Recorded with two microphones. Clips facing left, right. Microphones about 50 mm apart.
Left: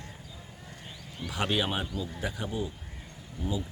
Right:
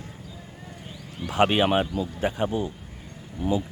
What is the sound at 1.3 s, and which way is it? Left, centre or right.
Speech, right.